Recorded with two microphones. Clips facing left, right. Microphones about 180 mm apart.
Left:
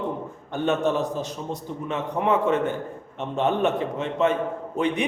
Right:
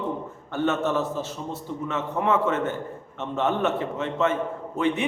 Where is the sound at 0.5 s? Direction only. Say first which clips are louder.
Left 1 dB; 15° left (ahead or behind).